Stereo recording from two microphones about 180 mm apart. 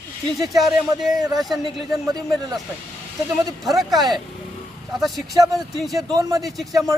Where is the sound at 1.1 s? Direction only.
20° right (ahead or behind).